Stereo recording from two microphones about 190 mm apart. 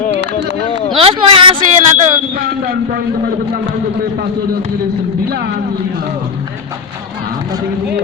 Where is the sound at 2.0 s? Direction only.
45° right (ahead or behind).